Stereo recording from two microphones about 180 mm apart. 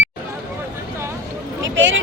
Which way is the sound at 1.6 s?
90° right.